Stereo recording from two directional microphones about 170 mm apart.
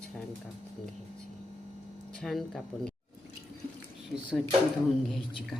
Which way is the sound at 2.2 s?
Centre (ahead or behind).